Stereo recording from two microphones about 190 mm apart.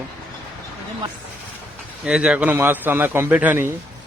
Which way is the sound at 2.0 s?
5° right (ahead or behind).